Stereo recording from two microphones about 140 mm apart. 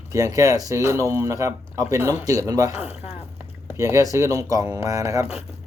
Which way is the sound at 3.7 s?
20° right (ahead or behind).